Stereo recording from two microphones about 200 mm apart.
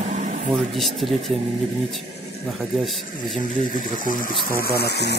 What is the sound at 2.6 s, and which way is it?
Speech, centre (ahead or behind).